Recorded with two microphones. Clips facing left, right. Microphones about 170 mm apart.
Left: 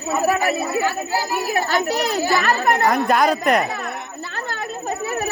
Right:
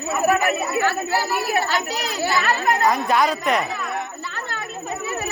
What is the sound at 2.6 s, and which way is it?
Speech, 60° left (ahead or behind).